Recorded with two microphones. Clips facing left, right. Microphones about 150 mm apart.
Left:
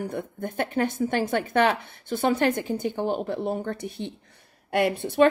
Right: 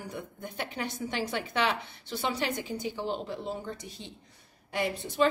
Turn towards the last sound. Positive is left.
turn(degrees=60)  # may be behind; listen again after turning